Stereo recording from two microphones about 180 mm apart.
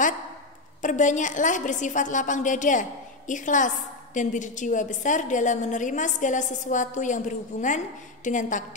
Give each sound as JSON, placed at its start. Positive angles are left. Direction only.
{"t": 0.8, "sound": "a woman's voice", "side_deg": 45}